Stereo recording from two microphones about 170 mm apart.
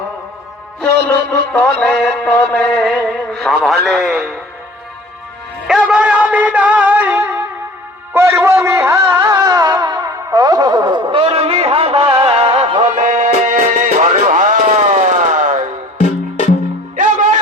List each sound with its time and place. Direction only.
0.8 s music: 10° left (ahead or behind)
3.1 s a man's voice: centre (ahead or behind)
3.8 s music: centre (ahead or behind)
5.6 s a sound: 5° right (ahead or behind)
8.1 s music: 15° right (ahead or behind); by 15.6 s 50° right (ahead or behind)
16.0 s music: 40° left (ahead or behind)
17.0 s music: 50° right (ahead or behind)